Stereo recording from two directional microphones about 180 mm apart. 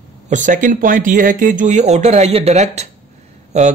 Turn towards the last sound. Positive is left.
turn(degrees=-40)  # may be behind; listen again after turning